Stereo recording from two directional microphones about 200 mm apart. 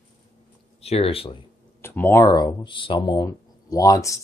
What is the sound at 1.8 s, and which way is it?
Speech, 10° left (ahead or behind).